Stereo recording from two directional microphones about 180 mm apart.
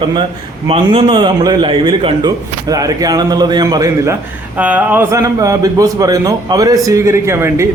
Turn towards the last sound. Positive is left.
turn(degrees=-15)  # may be behind; listen again after turning